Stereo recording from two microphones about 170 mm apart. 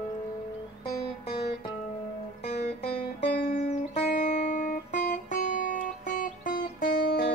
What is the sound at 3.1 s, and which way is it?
Music, 75° left (ahead or behind).